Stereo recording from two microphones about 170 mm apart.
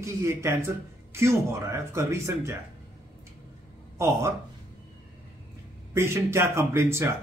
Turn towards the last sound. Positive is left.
turn(degrees=-15)  # may be behind; listen again after turning